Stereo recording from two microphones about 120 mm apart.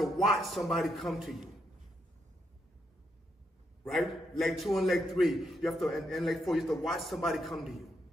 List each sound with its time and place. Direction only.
0.0 s a man's voice: centre (ahead or behind)
3.8 s a man's voice: centre (ahead or behind)